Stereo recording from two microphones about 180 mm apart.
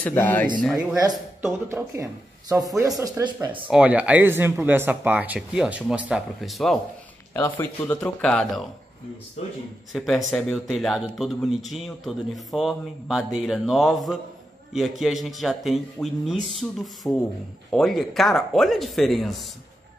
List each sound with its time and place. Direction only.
0.0 s speech: 10° left (ahead or behind)
0.7 s speech: 20° right (ahead or behind)
3.6 s speech: 5° right (ahead or behind)
7.3 s speech: 15° left (ahead or behind)
9.9 s speech: centre (ahead or behind)